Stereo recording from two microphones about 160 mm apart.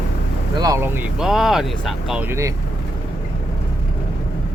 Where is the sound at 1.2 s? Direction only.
Centre (ahead or behind).